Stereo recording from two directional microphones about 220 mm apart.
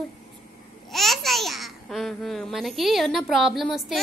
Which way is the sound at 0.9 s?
Centre (ahead or behind).